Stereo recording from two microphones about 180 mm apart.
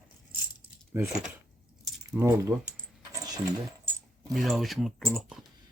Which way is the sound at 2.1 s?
15° right (ahead or behind).